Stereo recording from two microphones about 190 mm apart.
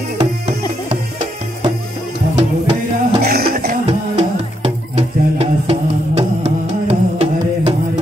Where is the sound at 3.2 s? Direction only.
55° right (ahead or behind).